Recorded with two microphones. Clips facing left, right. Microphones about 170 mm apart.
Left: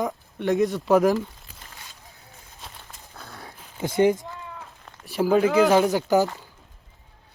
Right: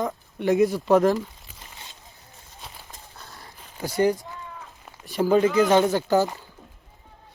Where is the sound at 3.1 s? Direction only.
60° left (ahead or behind).